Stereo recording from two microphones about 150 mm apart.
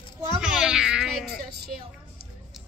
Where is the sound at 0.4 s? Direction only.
5° right (ahead or behind).